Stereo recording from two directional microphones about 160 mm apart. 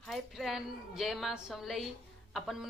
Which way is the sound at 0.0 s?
Centre (ahead or behind).